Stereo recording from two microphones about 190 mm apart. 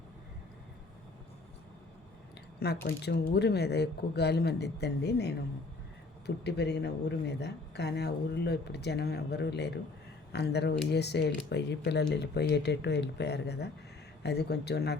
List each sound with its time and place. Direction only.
2.6 s speech: 55° left (ahead or behind)